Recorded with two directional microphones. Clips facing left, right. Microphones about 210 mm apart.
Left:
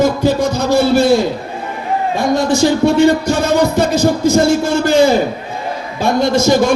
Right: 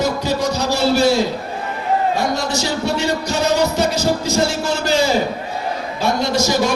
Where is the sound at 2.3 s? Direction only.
50° left (ahead or behind).